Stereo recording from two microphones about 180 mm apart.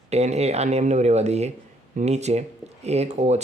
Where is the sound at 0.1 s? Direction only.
35° right (ahead or behind).